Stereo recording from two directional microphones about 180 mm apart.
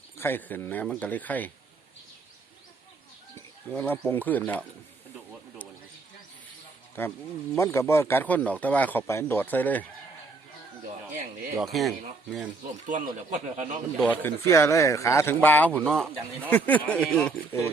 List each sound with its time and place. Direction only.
0.2 s speech: 10° left (ahead or behind)
3.3 s speech: 10° left (ahead or behind)
7.0 s speech: 10° left (ahead or behind)
11.6 s speech: centre (ahead or behind)
12.9 s speech: 40° right (ahead or behind)
14.0 s speech: 10° left (ahead or behind)